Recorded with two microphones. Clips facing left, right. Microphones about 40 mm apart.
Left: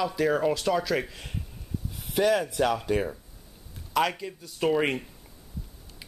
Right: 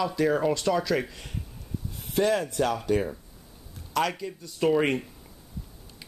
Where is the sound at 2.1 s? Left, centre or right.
Centre.